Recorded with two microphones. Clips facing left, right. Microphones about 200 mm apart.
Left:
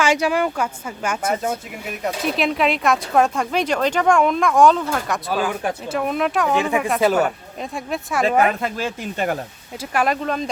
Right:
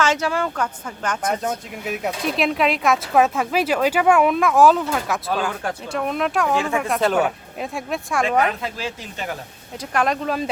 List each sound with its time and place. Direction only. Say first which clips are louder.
0.0 s a woman's voice: left 2 dB; 15° left (ahead or behind)
6.5 s speech: left 2 dB; 15° left (ahead or behind)
6.8 s a woman's voice: left 2 dB; centre (ahead or behind)
8.4 s speech: left 3 dB; 50° left (ahead or behind)
9.9 s a woman's voice: left 1 dB; 5° left (ahead or behind)